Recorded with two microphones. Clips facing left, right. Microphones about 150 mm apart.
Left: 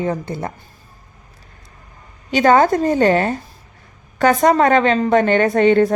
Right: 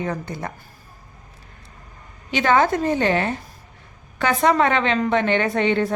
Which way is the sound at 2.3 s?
40° left (ahead or behind).